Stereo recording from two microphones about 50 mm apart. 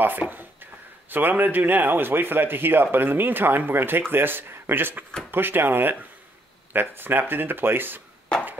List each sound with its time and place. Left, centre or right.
0.0 s speech: right